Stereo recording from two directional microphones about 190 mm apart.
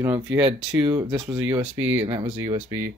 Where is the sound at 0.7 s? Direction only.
10° right (ahead or behind).